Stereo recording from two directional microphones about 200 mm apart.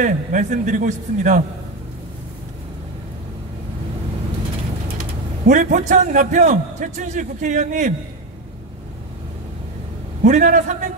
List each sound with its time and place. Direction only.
0.0 s a man's voice: 40° right (ahead or behind)
5.5 s a man's voice: 40° right (ahead or behind)
10.2 s a man's voice: 40° right (ahead or behind)